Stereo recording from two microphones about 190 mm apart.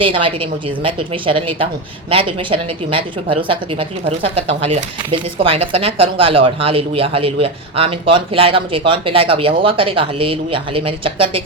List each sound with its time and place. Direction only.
0.0 s speech: 30° right (ahead or behind)